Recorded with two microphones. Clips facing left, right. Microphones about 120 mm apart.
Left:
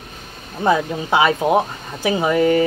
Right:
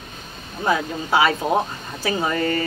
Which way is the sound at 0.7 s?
20° left (ahead or behind).